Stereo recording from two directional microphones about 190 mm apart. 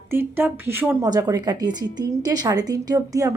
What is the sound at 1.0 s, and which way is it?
A woman's voice, 20° right (ahead or behind).